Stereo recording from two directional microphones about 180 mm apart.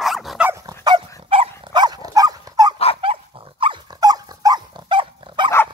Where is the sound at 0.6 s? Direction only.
25° right (ahead or behind).